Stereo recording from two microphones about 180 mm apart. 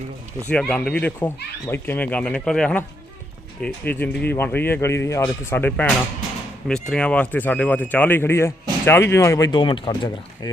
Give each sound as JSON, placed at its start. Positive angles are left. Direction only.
{"t": 0.5, "sound": "speech", "side_deg": 5}